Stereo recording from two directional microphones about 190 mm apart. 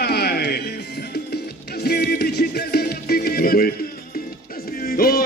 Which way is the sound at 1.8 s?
55° left (ahead or behind).